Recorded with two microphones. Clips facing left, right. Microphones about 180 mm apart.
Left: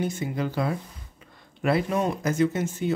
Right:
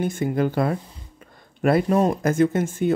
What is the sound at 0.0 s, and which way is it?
Speech, 55° right (ahead or behind).